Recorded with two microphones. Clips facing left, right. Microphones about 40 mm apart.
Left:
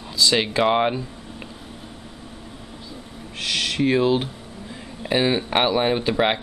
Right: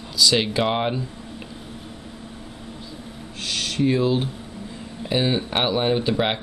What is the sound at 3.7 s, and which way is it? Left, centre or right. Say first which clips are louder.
Speech: left 1 dB; left.